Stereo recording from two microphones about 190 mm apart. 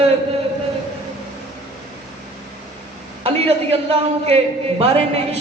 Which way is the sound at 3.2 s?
30° right (ahead or behind).